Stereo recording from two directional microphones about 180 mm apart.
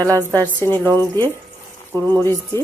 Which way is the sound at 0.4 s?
10° left (ahead or behind).